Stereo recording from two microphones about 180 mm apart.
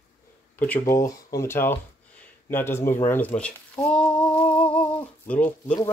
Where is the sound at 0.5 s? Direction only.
10° left (ahead or behind).